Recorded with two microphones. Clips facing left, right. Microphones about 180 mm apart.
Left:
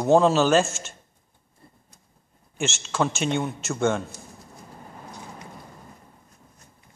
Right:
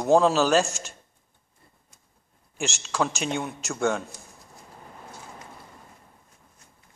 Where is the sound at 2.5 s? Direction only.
Centre (ahead or behind).